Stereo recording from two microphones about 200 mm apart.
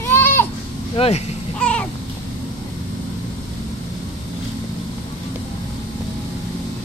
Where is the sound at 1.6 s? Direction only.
5° left (ahead or behind).